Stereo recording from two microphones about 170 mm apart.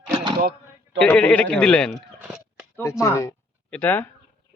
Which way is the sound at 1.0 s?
5° left (ahead or behind).